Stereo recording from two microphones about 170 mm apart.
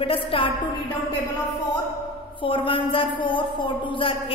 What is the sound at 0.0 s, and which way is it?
Speech, 30° left (ahead or behind).